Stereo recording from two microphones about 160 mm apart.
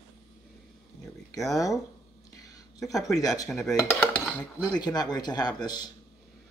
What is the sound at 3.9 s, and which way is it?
Dishes, 5° left (ahead or behind).